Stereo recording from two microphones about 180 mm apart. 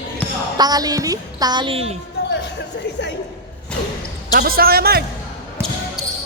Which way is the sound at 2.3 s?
75° left (ahead or behind).